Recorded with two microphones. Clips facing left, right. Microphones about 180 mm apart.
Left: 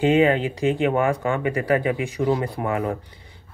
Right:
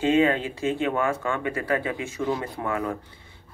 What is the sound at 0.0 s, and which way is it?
Speech, 15° left (ahead or behind).